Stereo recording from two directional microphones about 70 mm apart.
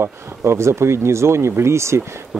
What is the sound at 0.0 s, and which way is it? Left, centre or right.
Speech, right.